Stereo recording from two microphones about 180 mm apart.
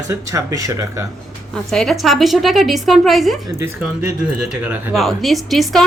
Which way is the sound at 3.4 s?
15° right (ahead or behind).